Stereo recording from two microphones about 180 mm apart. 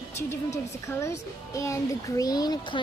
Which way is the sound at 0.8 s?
15° left (ahead or behind).